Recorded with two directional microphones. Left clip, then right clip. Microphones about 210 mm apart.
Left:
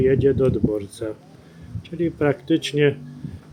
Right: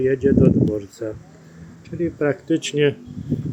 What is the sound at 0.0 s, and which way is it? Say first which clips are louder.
Speech: even; 5° left (ahead or behind).